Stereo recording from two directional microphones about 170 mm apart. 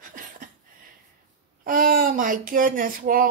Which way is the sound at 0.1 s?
50° right (ahead or behind).